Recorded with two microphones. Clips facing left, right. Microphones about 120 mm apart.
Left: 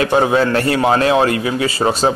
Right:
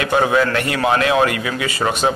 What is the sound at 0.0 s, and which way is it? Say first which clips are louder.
Speech: left 2 dB; 30° left (ahead or behind).